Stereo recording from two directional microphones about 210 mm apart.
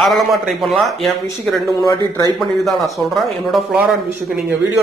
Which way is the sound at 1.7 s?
20° left (ahead or behind).